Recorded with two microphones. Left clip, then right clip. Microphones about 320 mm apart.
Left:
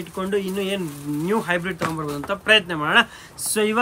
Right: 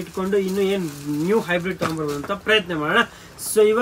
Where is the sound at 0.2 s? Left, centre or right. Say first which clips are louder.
Right 3 dB; centre.